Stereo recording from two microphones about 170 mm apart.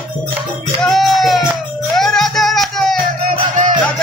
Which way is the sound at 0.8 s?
Centre (ahead or behind).